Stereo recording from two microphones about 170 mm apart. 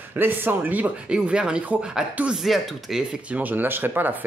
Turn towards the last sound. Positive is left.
turn(degrees=-10)  # may be behind; listen again after turning